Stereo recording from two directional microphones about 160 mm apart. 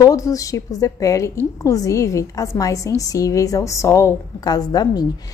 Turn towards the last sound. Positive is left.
turn(degrees=25)  # may be behind; listen again after turning